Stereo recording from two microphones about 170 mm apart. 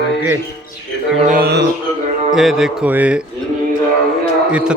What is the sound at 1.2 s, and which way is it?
Mantra, 65° right (ahead or behind).